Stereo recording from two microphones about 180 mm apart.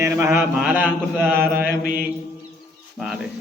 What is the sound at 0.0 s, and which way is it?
A man's voice, 10° right (ahead or behind).